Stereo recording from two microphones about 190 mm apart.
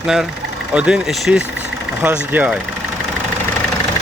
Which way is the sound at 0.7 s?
5° right (ahead or behind).